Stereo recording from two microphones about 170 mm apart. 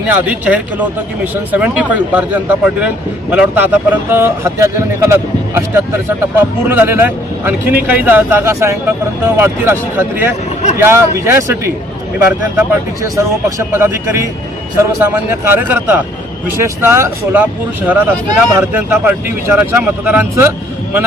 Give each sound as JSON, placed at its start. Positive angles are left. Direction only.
{"t": 0.1, "sound": "speech", "side_deg": -10}